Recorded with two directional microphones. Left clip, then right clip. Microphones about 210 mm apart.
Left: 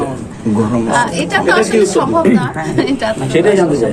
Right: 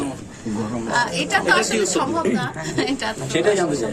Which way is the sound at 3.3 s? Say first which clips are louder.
Left 7 dB; 30° right (ahead or behind).